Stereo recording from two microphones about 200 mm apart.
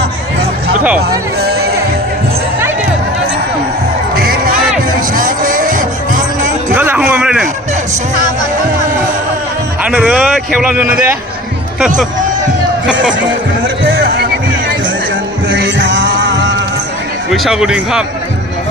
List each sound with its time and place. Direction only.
4.1 s crowd: 50° right (ahead or behind)
5.1 s music: 45° right (ahead or behind)
6.7 s a sound: 10° right (ahead or behind)
9.8 s a man's voice: 5° right (ahead or behind)
13.8 s a sound: 50° right (ahead or behind)
15.4 s music: 65° right (ahead or behind)
17.3 s speech: centre (ahead or behind)